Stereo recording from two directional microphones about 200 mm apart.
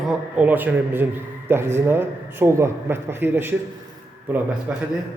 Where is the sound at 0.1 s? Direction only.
5° right (ahead or behind).